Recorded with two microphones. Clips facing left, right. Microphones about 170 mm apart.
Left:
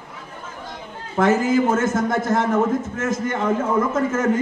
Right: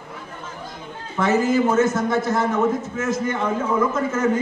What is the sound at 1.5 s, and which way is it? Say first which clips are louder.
A man's voice: even; 50° left (ahead or behind).